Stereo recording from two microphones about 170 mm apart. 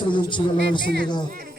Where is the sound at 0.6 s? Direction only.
75° right (ahead or behind).